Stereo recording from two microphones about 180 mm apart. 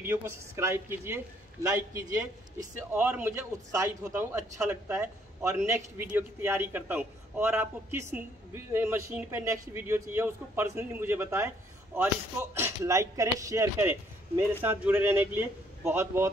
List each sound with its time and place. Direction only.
0.0 s a man's voice: 15° right (ahead or behind)